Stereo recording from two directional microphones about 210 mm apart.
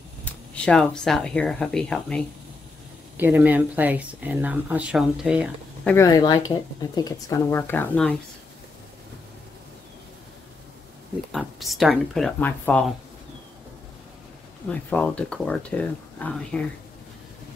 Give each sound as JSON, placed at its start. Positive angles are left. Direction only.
{"t": 0.2, "sound": "speech", "side_deg": 5}
{"t": 3.2, "sound": "speech", "side_deg": -10}
{"t": 5.9, "sound": "speech", "side_deg": 15}
{"t": 11.3, "sound": "speech", "side_deg": 0}
{"t": 14.7, "sound": "speech", "side_deg": 5}